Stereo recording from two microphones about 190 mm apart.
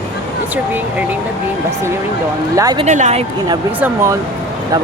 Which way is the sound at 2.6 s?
20° right (ahead or behind).